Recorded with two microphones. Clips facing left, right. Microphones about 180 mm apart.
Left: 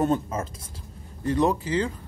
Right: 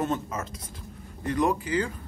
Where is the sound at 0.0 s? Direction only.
30° left (ahead or behind).